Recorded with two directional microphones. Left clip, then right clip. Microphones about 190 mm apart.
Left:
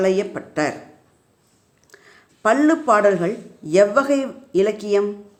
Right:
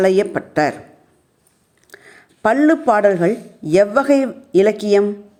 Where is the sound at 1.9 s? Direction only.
30° right (ahead or behind).